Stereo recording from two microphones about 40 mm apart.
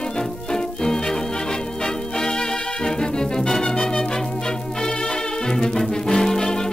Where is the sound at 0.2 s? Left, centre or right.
Centre.